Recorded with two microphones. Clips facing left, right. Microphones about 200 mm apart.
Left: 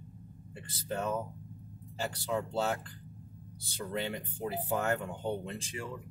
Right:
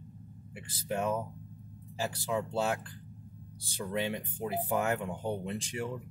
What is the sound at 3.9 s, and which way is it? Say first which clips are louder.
Speech: right 3 dB; 15° right (ahead or behind).